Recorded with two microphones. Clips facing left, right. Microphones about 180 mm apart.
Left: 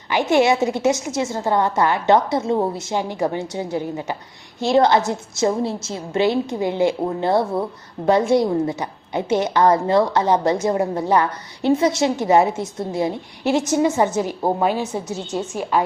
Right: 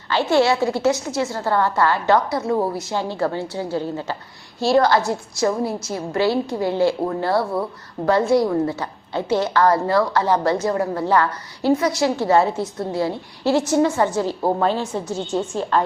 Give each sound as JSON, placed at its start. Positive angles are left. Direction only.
{"t": 0.1, "sound": "a woman's voice", "side_deg": 15}